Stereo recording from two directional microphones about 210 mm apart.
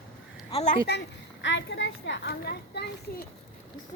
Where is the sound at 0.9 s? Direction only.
55° left (ahead or behind).